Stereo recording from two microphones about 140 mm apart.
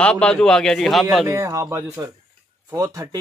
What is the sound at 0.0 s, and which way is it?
Speech, 5° left (ahead or behind).